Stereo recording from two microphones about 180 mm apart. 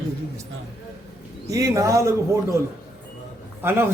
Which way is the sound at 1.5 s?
20° right (ahead or behind).